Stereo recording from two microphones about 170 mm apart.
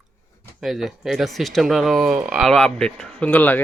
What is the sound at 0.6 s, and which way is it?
Speech, centre (ahead or behind).